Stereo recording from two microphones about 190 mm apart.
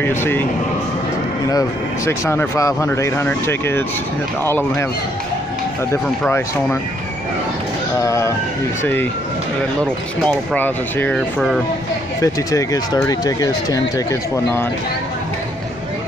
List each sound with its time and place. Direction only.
0.0 s speech: 10° left (ahead or behind)
1.5 s speech: 15° left (ahead or behind)
6.2 s speech: 10° left (ahead or behind)
8.0 s speech: 15° left (ahead or behind)
10.2 s speech: 10° left (ahead or behind)
12.2 s speech: 15° left (ahead or behind)